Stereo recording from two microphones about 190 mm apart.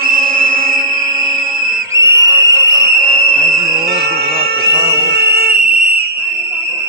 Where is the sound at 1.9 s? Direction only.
15° right (ahead or behind).